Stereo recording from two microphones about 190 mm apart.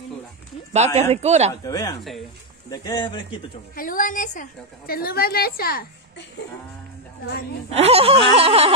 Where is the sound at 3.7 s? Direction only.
45° left (ahead or behind).